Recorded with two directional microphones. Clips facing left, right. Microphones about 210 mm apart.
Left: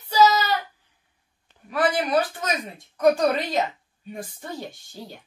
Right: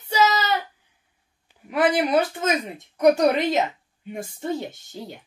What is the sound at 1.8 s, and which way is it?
A woman's voice, 20° right (ahead or behind).